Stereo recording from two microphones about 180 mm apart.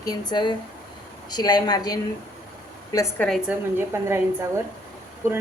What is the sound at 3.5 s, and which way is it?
Speech, 15° right (ahead or behind).